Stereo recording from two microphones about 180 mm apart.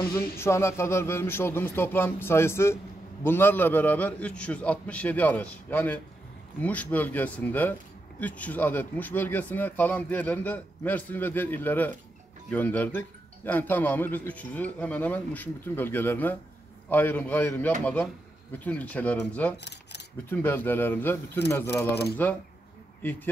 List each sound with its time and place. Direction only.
0.1 s a man's voice: 15° left (ahead or behind)